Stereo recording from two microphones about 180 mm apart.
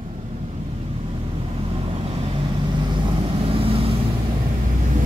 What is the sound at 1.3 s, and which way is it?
Vehicle, 35° right (ahead or behind).